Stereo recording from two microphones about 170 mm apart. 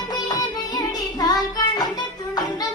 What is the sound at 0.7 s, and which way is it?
Child singing, 25° left (ahead or behind).